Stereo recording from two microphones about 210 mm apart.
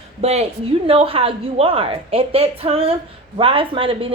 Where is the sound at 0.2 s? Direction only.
30° right (ahead or behind).